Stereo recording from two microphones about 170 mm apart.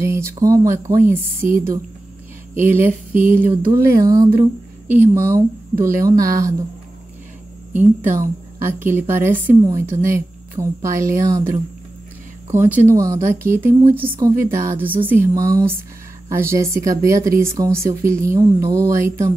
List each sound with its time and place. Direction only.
0.0 s speech: 15° right (ahead or behind)
2.5 s speech: 15° right (ahead or behind)
8.2 s a woman's voice: 15° right (ahead or behind)
12.4 s speech: 15° right (ahead or behind)